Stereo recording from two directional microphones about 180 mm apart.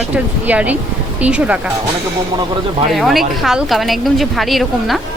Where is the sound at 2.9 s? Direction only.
Centre (ahead or behind).